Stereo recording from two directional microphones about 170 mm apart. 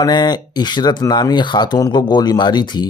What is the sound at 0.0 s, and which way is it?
Speech, 25° left (ahead or behind).